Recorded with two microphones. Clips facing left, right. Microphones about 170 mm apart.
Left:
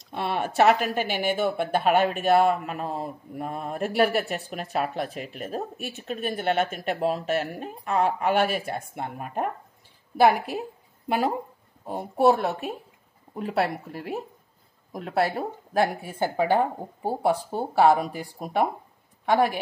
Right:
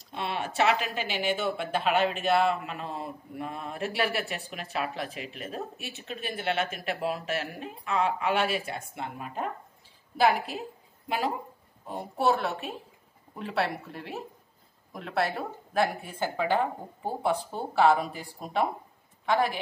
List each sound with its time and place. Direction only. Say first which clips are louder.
0.1 s speech: left 5 dB; 50° left (ahead or behind)
14.9 s speech: left 4 dB; 40° left (ahead or behind)